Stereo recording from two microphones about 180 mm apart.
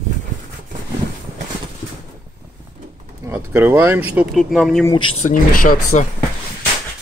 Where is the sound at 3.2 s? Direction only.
15° right (ahead or behind).